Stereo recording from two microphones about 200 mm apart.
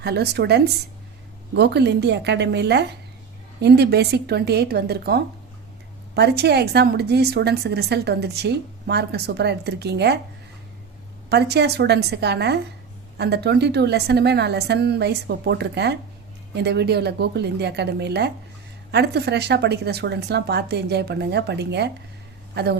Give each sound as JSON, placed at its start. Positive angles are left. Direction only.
{"t": 0.0, "sound": "a woman's voice", "side_deg": -55}
{"t": 11.3, "sound": "a woman's voice", "side_deg": -55}